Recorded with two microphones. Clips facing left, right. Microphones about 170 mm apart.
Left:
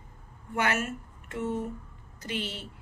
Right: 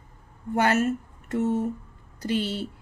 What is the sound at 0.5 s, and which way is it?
A woman's voice, 40° right (ahead or behind).